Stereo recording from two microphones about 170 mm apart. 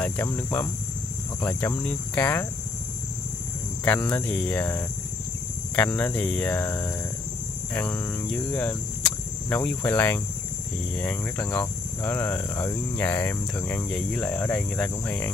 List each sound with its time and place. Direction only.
0.0 s speech: 10° left (ahead or behind)
3.8 s speech: 10° left (ahead or behind)